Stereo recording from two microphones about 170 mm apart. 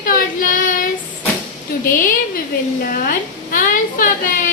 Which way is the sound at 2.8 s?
55° left (ahead or behind).